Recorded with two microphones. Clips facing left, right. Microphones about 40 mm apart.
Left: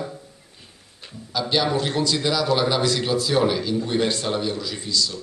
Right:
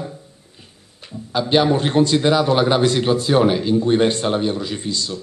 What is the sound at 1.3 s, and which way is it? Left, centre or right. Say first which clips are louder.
A man's voice: right 6 dB; right.